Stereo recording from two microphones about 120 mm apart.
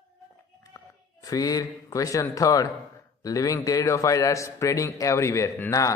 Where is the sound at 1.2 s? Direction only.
30° left (ahead or behind).